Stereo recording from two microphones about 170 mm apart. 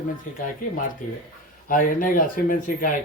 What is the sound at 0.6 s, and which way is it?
Speech, 55° left (ahead or behind).